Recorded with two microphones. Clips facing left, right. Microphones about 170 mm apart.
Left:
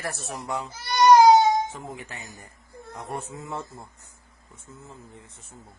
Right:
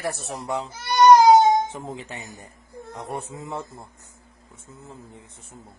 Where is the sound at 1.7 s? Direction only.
20° right (ahead or behind).